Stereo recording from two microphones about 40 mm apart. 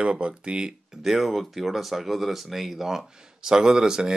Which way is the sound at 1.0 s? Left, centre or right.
Centre.